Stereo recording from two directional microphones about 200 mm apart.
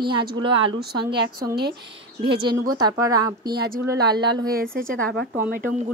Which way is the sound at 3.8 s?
20° right (ahead or behind).